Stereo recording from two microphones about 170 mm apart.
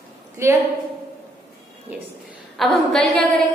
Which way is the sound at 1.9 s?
10° right (ahead or behind).